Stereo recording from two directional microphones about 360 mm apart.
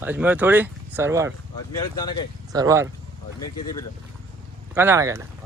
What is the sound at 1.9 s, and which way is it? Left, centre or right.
Speech, centre.